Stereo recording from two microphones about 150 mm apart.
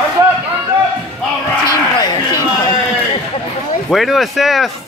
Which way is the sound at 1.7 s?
25° left (ahead or behind).